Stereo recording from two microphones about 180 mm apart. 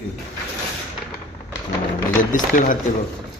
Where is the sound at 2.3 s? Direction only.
45° left (ahead or behind).